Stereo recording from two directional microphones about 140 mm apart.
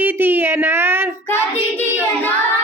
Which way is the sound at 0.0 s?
15° right (ahead or behind).